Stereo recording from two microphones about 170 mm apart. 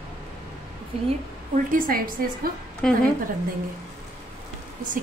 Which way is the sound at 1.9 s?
60° right (ahead or behind).